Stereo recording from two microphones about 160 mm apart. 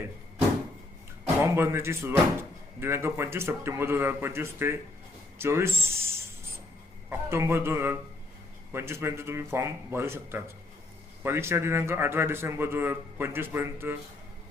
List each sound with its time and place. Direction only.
1.4 s speech: 15° right (ahead or behind)
7.1 s speech: 15° right (ahead or behind)